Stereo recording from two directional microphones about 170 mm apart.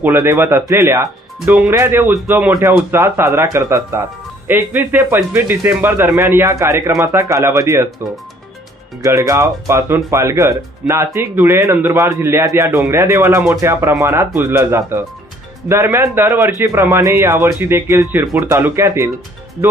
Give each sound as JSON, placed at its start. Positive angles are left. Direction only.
{"t": 0.0, "sound": "speech", "side_deg": -15}
{"t": 9.0, "sound": "speech", "side_deg": -20}